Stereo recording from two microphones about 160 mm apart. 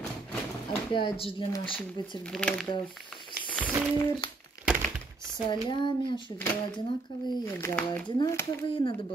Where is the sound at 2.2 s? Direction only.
5° left (ahead or behind).